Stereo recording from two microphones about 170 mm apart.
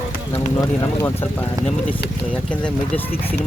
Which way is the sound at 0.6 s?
15° left (ahead or behind).